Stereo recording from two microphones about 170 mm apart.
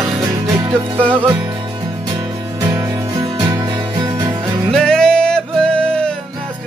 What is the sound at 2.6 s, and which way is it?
Music, 15° right (ahead or behind).